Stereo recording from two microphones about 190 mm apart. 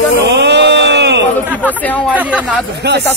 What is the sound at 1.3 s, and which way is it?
Speech, 10° left (ahead or behind).